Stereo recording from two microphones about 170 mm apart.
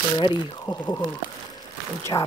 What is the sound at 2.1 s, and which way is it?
Speech, 20° left (ahead or behind).